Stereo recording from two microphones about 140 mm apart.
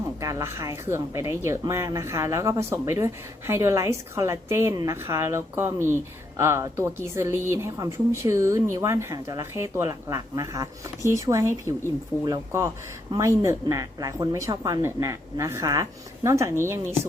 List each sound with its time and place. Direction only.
0.2 s speech: 25° right (ahead or behind)